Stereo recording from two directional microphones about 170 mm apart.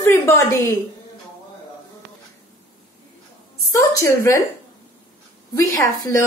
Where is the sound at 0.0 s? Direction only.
15° left (ahead or behind).